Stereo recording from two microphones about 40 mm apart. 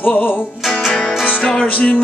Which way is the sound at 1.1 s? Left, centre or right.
Centre.